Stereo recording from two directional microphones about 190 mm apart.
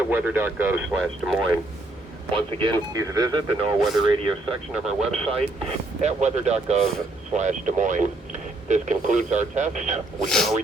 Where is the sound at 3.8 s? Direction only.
Centre (ahead or behind).